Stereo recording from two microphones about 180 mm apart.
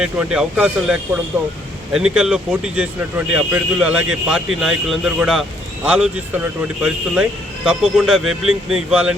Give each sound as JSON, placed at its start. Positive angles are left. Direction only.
{"t": 0.0, "sound": "speech", "side_deg": -5}